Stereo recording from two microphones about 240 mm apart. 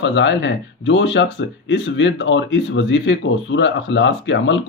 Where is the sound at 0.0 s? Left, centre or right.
Left.